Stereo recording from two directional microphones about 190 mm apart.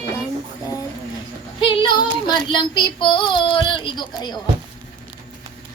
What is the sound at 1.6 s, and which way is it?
Child singing, 25° left (ahead or behind).